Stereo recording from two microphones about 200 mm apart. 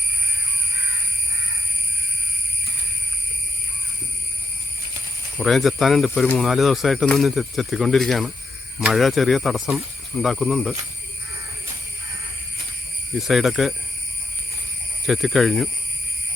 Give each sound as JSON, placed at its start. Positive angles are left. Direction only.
{"t": 5.4, "sound": "speech", "side_deg": 0}
{"t": 13.1, "sound": "speech", "side_deg": 0}
{"t": 15.0, "sound": "speech", "side_deg": 0}